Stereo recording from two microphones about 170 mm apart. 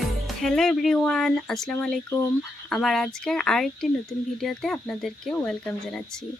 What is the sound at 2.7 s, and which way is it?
Speech, centre (ahead or behind).